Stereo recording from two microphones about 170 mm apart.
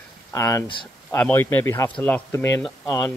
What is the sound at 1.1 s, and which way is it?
Speech, 15° left (ahead or behind).